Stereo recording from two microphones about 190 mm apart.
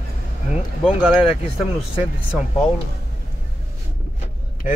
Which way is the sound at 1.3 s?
30° left (ahead or behind).